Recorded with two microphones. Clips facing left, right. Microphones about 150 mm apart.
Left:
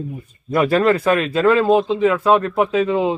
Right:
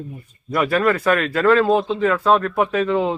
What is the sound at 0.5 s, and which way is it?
A man's voice, 30° left (ahead or behind).